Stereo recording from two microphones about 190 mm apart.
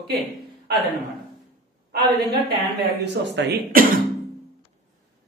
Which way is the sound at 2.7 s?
65° right (ahead or behind).